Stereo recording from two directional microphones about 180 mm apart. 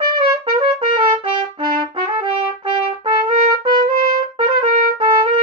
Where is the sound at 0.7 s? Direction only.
25° right (ahead or behind).